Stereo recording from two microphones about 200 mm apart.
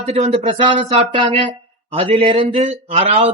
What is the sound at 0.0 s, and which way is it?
A man's voice, 35° right (ahead or behind).